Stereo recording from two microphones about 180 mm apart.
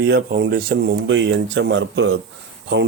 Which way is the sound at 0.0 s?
65° right (ahead or behind).